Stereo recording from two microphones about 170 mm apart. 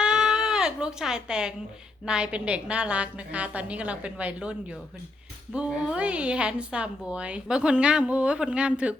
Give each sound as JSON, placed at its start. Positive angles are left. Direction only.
{"t": 0.0, "sound": "a sound", "side_deg": -5}
{"t": 2.0, "sound": "a woman's voice", "side_deg": -5}
{"t": 5.5, "sound": "a woman's voice", "side_deg": -5}